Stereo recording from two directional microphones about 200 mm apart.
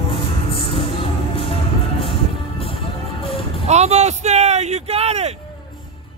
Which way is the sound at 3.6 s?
35° right (ahead or behind).